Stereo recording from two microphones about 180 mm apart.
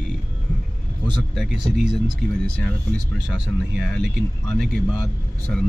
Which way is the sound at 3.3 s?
Centre (ahead or behind).